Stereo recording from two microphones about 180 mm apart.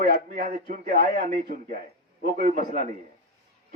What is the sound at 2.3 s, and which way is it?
Speech, 45° right (ahead or behind).